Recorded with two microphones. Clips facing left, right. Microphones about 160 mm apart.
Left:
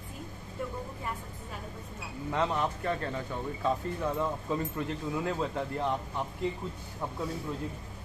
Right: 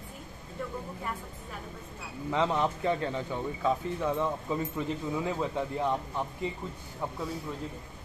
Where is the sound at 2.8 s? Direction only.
20° right (ahead or behind).